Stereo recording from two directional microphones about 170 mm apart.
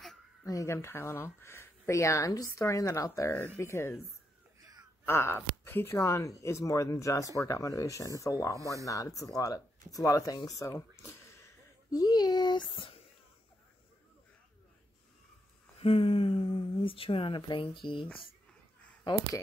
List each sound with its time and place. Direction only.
0.0 s a sound: centre (ahead or behind)
0.5 s speech: 20° left (ahead or behind)
4.6 s crow: 20° right (ahead or behind)
5.0 s speech: 15° left (ahead or behind); by 13.0 s 30° left (ahead or behind)
15.8 s speech: 35° left (ahead or behind)